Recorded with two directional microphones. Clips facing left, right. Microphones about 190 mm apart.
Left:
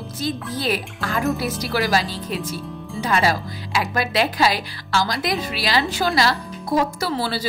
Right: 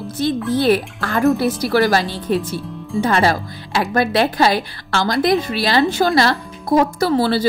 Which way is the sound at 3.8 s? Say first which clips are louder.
Right 6 dB; 55° right (ahead or behind).